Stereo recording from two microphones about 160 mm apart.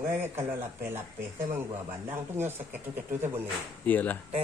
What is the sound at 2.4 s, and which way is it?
Speech, 15° right (ahead or behind).